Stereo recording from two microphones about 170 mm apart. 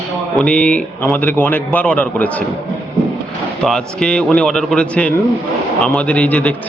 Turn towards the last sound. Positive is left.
turn(degrees=10)  # may be behind; listen again after turning